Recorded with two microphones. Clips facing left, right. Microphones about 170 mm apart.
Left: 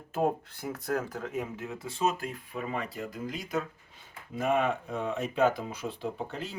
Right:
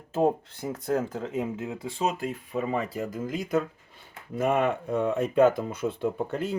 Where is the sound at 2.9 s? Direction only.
45° right (ahead or behind).